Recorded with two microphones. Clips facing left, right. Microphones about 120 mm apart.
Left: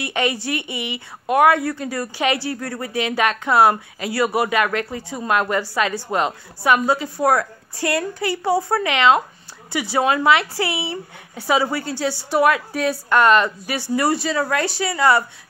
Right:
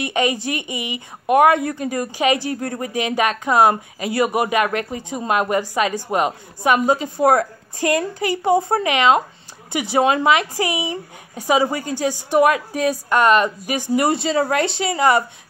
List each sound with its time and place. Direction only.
0.0 s speech: 15° right (ahead or behind)